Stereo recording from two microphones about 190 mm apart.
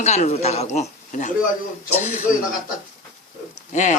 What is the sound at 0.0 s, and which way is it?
Speech, 35° left (ahead or behind).